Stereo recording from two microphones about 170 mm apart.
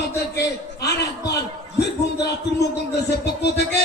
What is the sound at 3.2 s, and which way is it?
Music, 75° left (ahead or behind).